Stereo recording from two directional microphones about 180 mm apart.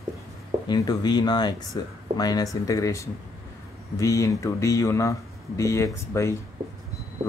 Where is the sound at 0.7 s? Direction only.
20° left (ahead or behind).